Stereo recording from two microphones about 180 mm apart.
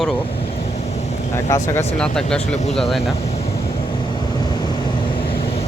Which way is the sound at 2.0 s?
5° left (ahead or behind).